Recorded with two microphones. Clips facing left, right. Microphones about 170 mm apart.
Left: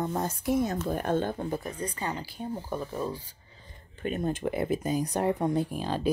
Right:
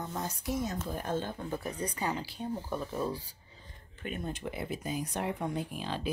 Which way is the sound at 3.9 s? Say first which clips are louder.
Left 8 dB; 40° left (ahead or behind).